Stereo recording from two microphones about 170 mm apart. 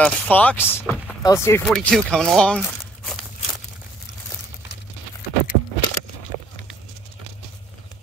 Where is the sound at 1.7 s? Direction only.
Centre (ahead or behind).